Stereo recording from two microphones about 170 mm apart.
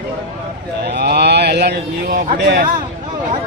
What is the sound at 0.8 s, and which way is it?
Speech, 75° right (ahead or behind).